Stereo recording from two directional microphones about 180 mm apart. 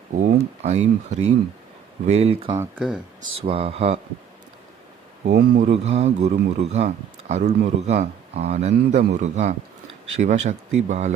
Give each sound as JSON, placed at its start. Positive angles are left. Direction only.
{"t": 0.6, "sound": "a man's voice", "side_deg": -40}
{"t": 2.6, "sound": "speech", "side_deg": -5}
{"t": 3.4, "sound": "a man's voice", "side_deg": -30}
{"t": 5.3, "sound": "a man's voice", "side_deg": -55}